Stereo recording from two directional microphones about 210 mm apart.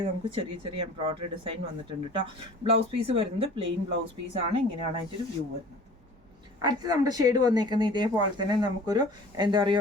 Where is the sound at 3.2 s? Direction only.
25° right (ahead or behind).